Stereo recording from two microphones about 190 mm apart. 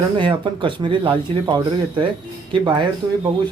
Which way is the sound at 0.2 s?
25° right (ahead or behind).